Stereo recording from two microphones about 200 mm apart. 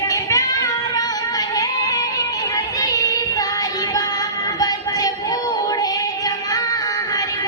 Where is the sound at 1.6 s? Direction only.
15° left (ahead or behind).